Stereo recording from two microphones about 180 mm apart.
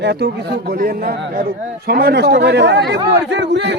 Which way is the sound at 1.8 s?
60° right (ahead or behind).